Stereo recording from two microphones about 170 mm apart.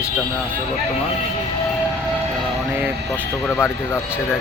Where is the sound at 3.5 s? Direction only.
15° left (ahead or behind).